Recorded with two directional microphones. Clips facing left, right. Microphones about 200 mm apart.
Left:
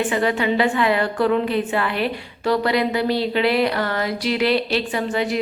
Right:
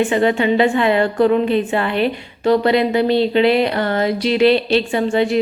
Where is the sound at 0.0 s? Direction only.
25° right (ahead or behind).